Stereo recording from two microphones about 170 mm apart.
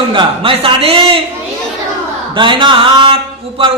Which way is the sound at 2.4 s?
30° right (ahead or behind).